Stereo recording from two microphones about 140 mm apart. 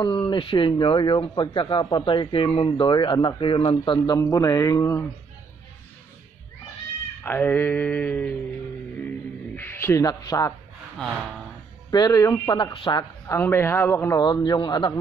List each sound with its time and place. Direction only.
0.0 s a man's voice: 35° left (ahead or behind)
7.2 s mantra: 15° left (ahead or behind)
9.6 s speech: 15° left (ahead or behind)
11.9 s speech: 25° left (ahead or behind)
12.5 s a man's voice: 35° left (ahead or behind)
13.3 s mantra: 15° left (ahead or behind)
14.2 s a man's voice: 30° left (ahead or behind)